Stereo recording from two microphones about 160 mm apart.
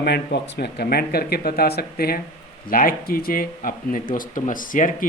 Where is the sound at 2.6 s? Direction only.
60° left (ahead or behind).